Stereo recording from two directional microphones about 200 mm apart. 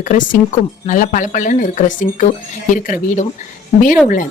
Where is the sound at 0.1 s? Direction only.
40° left (ahead or behind).